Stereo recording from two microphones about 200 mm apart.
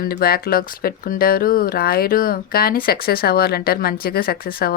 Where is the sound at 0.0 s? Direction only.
50° left (ahead or behind).